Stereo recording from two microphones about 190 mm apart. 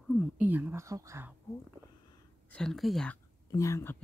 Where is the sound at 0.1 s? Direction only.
Centre (ahead or behind).